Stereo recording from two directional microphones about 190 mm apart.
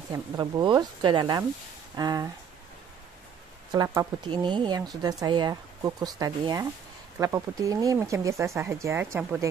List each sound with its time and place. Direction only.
0.1 s speech: 20° right (ahead or behind)
3.7 s speech: 20° right (ahead or behind)